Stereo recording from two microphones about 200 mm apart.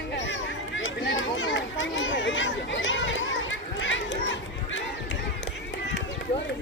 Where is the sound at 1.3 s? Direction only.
70° left (ahead or behind).